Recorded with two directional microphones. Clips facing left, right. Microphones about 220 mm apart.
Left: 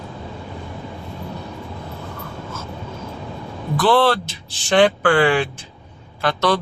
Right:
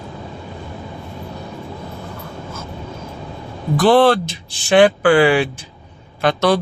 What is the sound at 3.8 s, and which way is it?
A man's voice, 15° right (ahead or behind).